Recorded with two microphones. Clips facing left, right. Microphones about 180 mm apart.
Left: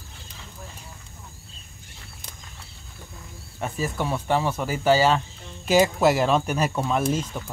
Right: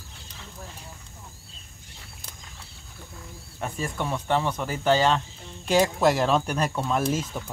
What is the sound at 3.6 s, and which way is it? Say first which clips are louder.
Speech: left 3 dB; 5° left (ahead or behind).